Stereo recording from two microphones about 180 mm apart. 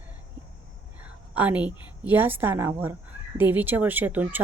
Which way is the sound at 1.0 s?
10° right (ahead or behind).